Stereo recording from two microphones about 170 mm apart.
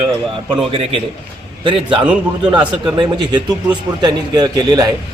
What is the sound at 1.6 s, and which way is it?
A man's voice, 30° right (ahead or behind).